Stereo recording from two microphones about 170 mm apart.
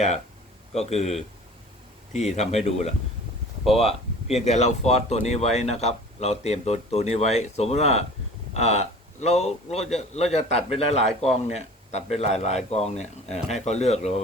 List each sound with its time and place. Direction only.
0.7 s a man's voice: 40° left (ahead or behind)